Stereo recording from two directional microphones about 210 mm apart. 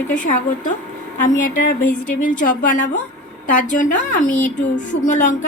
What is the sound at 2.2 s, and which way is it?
A woman's voice, 40° left (ahead or behind).